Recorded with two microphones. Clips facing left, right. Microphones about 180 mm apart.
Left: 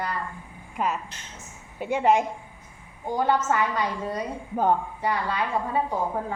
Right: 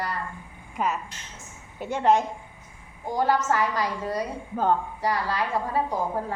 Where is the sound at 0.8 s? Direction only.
Centre (ahead or behind).